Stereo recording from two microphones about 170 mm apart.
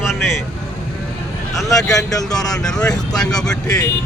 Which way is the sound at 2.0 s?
20° left (ahead or behind).